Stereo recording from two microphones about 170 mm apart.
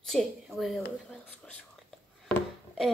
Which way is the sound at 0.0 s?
Centre (ahead or behind).